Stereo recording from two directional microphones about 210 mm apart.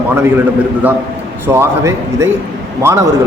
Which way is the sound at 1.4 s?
10° right (ahead or behind).